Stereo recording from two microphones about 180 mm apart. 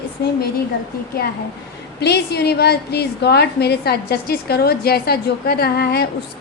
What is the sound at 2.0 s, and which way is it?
A woman's voice, 65° left (ahead or behind).